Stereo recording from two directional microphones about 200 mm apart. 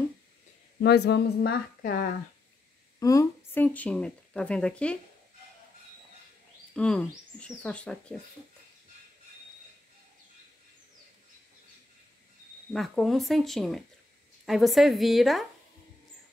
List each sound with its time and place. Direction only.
0.7 s a woman's voice: 55° left (ahead or behind)
3.0 s speech: 15° left (ahead or behind)
6.7 s speech: 5° left (ahead or behind)
12.7 s speech: centre (ahead or behind)